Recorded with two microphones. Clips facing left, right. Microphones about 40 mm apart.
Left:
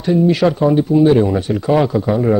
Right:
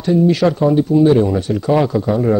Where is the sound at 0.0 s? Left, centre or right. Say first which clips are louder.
Even; centre.